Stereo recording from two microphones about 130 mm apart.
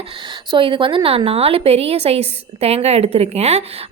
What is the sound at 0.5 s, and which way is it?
A woman's voice, 40° right (ahead or behind).